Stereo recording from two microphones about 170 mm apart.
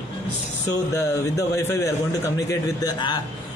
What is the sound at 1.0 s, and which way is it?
Speech, 20° left (ahead or behind).